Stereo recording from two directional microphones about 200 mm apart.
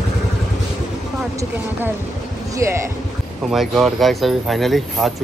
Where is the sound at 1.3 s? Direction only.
10° right (ahead or behind).